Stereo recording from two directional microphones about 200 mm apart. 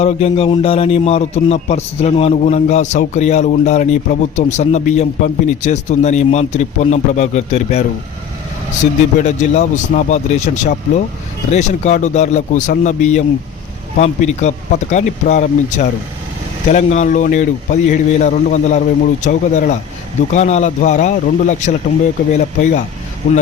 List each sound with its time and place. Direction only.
0.0 s a man's voice: 30° left (ahead or behind)